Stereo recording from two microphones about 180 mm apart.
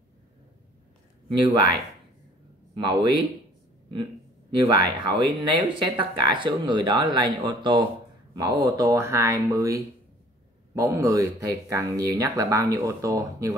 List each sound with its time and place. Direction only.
2.7 s speech: 25° right (ahead or behind)